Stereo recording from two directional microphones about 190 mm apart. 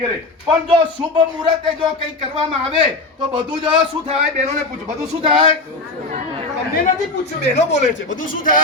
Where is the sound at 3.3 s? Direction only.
25° right (ahead or behind).